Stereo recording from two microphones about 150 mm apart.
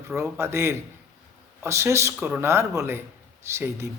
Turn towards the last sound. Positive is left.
turn(degrees=-15)  # may be behind; listen again after turning